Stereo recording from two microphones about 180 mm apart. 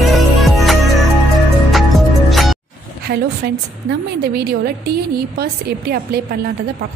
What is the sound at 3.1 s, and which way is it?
A woman's voice, 55° right (ahead or behind).